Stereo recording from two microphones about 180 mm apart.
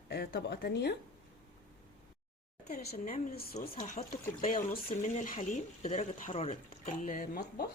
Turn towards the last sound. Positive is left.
turn(degrees=50)  # may be behind; listen again after turning